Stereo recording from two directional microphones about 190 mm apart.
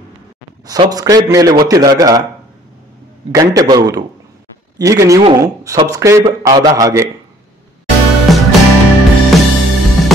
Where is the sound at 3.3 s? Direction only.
20° right (ahead or behind).